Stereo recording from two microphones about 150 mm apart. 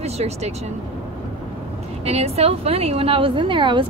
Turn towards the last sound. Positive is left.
turn(degrees=-35)  # may be behind; listen again after turning